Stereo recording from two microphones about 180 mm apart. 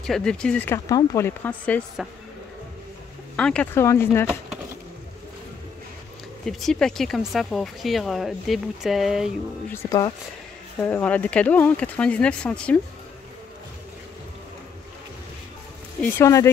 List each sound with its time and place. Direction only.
0.0 s speech: 5° left (ahead or behind)
2.0 s speech: 5° right (ahead or behind)
3.3 s speech: 5° left (ahead or behind)
6.4 s speech: centre (ahead or behind)
9.7 s speech: 15° left (ahead or behind)
10.8 s speech: 10° left (ahead or behind)
16.0 s speech: 15° left (ahead or behind)